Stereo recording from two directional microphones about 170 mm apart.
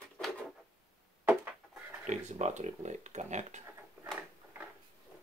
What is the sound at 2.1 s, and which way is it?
Speech, 45° right (ahead or behind).